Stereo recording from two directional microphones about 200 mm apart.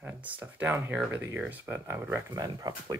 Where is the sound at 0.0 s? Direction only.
10° right (ahead or behind).